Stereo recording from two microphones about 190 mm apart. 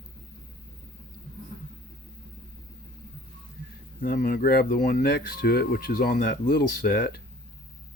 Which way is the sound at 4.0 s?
50° left (ahead or behind).